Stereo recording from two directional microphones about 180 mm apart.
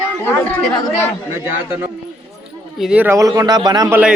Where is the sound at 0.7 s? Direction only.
20° left (ahead or behind).